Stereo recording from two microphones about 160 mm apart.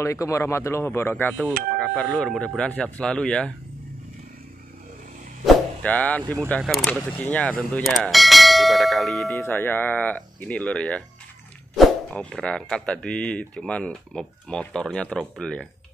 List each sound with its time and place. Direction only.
0.0 s speech: 20° left (ahead or behind)
5.4 s a sound: 5° left (ahead or behind)
6.6 s speech: centre (ahead or behind)
9.4 s speech: 15° left (ahead or behind)